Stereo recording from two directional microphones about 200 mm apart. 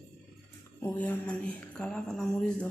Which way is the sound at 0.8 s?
5° left (ahead or behind).